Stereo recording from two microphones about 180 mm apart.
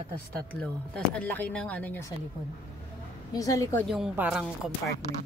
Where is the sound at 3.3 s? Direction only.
20° left (ahead or behind).